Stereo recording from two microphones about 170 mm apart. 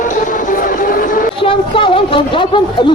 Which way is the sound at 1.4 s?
30° left (ahead or behind).